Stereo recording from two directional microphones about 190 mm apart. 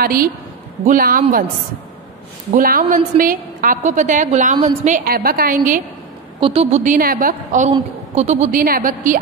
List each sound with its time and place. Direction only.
0.0 s a woman's voice: 50° right (ahead or behind)
2.5 s a woman's voice: 50° right (ahead or behind)
6.4 s a woman's voice: 35° right (ahead or behind)
7.0 s a woman's voice: 50° right (ahead or behind)